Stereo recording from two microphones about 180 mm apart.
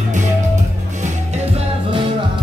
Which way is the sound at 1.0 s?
35° right (ahead or behind).